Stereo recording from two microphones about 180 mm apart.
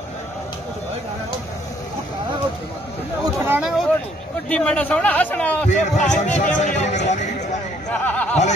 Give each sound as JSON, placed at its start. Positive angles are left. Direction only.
{"t": 3.3, "sound": "a sound", "side_deg": -10}
{"t": 4.5, "sound": "a man's voice", "side_deg": 5}
{"t": 5.7, "sound": "a man's voice", "side_deg": 40}
{"t": 8.0, "sound": "speech", "side_deg": 5}